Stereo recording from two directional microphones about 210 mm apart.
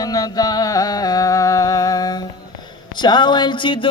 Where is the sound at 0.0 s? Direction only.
20° left (ahead or behind).